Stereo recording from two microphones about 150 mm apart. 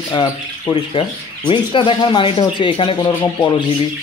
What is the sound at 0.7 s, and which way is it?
Speech, 30° left (ahead or behind).